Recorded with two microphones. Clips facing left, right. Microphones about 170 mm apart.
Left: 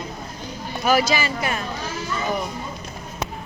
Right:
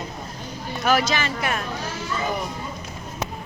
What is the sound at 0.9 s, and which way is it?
Speech, 5° left (ahead or behind).